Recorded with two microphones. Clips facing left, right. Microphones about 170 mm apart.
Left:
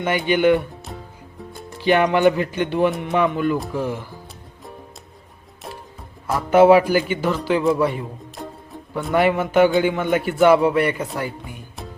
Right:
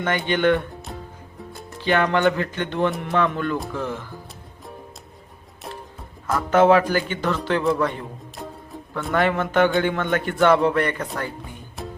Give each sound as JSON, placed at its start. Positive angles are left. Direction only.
{"t": 0.0, "sound": "speech", "side_deg": 10}
{"t": 1.8, "sound": "a man's voice", "side_deg": 15}
{"t": 6.3, "sound": "a man's voice", "side_deg": 10}
{"t": 8.4, "sound": "music", "side_deg": 0}
{"t": 9.1, "sound": "a man's voice", "side_deg": 10}
{"t": 11.8, "sound": "music", "side_deg": 0}